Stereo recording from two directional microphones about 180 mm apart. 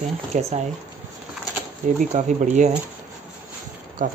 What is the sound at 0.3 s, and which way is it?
Speech, 40° right (ahead or behind).